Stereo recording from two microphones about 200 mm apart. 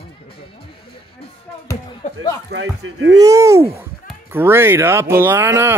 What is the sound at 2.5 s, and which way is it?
Speech, 70° right (ahead or behind).